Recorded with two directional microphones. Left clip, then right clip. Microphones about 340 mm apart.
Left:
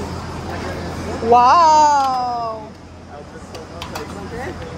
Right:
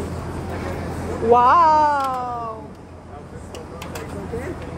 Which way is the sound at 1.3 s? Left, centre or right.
Centre.